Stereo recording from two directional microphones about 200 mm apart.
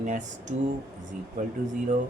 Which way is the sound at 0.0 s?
40° right (ahead or behind).